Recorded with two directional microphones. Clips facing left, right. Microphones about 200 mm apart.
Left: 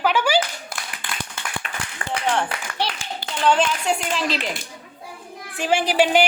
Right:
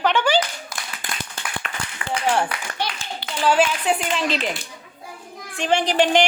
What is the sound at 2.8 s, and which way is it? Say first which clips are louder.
Clapping: left 2 dB; 30° left (ahead or behind).